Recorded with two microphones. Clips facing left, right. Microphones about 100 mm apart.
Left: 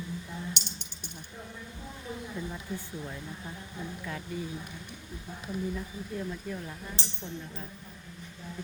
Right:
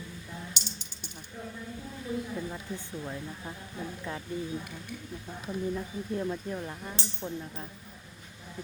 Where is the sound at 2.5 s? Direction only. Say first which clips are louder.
Even; 20° right (ahead or behind).